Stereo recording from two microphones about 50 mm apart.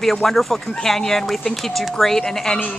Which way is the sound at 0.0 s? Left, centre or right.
Centre.